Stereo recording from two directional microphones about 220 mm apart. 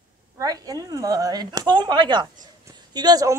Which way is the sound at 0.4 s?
15° right (ahead or behind).